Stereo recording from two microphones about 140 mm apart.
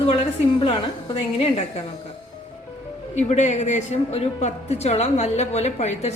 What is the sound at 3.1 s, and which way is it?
A woman's voice, 55° left (ahead or behind).